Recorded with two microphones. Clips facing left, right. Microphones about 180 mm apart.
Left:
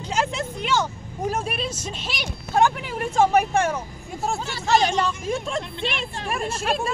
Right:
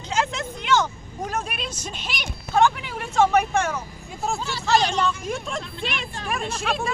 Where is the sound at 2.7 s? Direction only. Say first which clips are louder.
Left 4 dB; 40° left (ahead or behind).